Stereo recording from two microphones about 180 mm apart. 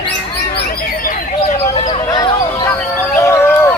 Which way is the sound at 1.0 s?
40° left (ahead or behind).